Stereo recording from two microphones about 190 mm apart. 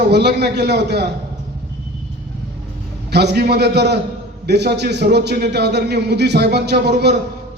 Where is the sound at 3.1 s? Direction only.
60° right (ahead or behind).